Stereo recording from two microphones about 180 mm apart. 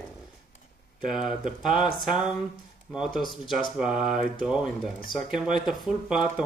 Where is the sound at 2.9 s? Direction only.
5° right (ahead or behind).